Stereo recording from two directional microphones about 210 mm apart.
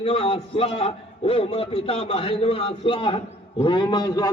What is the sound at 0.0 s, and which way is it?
A man's voice, 25° left (ahead or behind).